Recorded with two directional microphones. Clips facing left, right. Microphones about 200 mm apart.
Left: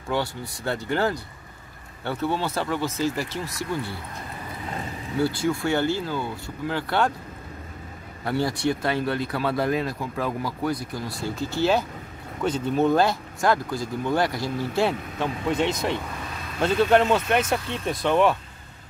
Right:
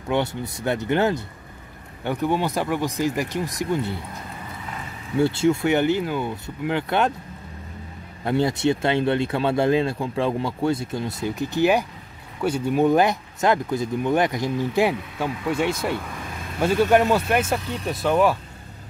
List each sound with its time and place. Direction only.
0.1 s speech: 20° right (ahead or behind)
5.2 s speech: 25° right (ahead or behind)
8.3 s speech: 20° right (ahead or behind); by 18.4 s 5° right (ahead or behind)